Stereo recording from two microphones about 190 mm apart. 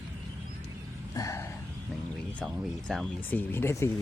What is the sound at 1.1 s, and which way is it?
Speech, 15° left (ahead or behind).